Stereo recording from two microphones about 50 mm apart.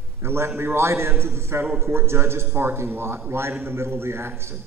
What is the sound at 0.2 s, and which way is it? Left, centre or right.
A man's voice, right.